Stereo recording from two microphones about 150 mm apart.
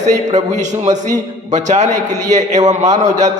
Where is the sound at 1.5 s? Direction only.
50° right (ahead or behind).